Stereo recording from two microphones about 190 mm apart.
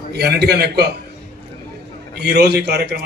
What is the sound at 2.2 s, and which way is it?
Speech, 60° right (ahead or behind).